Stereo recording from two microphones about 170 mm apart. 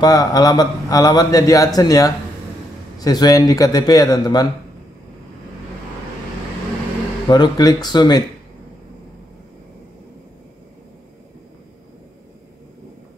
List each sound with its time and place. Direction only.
0.0 s a man's voice: 20° left (ahead or behind)
7.2 s a man's voice: 25° left (ahead or behind)